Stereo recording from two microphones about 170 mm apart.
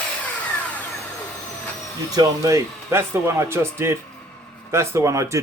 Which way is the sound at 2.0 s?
20° right (ahead or behind).